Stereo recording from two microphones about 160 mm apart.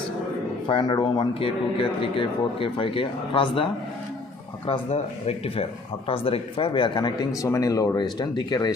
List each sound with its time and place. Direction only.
0.7 s speech: 30° left (ahead or behind)